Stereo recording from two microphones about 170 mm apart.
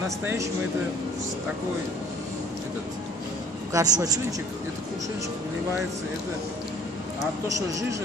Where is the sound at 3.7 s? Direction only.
20° right (ahead or behind).